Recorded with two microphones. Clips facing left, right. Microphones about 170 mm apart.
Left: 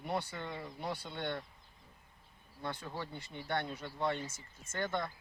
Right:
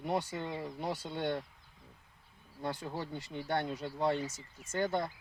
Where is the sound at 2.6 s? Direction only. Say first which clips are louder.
Right 3 dB; 40° right (ahead or behind).